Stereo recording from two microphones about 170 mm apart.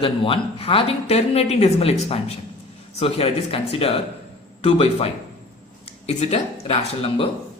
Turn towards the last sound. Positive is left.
turn(degrees=35)  # may be behind; listen again after turning